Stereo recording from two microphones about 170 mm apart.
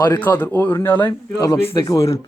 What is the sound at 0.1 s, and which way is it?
A man's voice, 10° left (ahead or behind).